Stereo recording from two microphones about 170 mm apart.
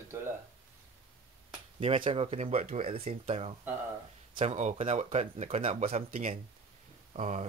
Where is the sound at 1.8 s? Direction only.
30° right (ahead or behind).